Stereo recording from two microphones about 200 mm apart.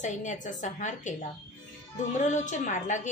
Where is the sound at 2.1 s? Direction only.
35° left (ahead or behind).